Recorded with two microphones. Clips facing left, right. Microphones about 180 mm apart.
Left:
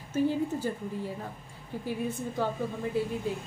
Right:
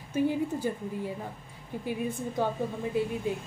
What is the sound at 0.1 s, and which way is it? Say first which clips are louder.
Speech: even; 15° right (ahead or behind).